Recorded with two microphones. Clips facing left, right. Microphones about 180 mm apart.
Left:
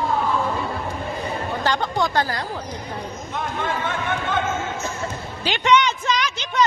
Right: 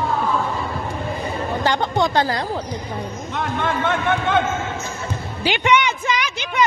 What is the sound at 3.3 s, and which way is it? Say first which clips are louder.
Speech: right 3 dB; 75° right (ahead or behind).